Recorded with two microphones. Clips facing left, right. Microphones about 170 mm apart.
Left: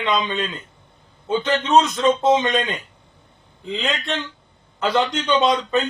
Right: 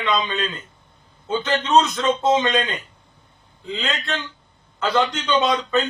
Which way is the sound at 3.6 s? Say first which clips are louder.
Left 2 dB; 20° left (ahead or behind).